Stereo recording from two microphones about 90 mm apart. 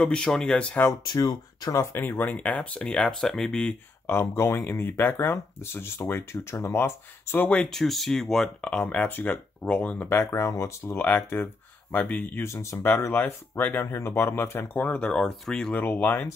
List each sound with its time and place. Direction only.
0.0 s speech: 10° left (ahead or behind)
1.0 s speech: 50° left (ahead or behind)
1.8 s speech: 30° left (ahead or behind); by 3.7 s 10° left (ahead or behind)
4.1 s speech: 30° left (ahead or behind)
7.6 s speech: centre (ahead or behind); by 10.2 s 20° left (ahead or behind)
10.3 s speech: 35° left (ahead or behind); by 15.7 s 5° left (ahead or behind)
16.0 s speech: 20° left (ahead or behind)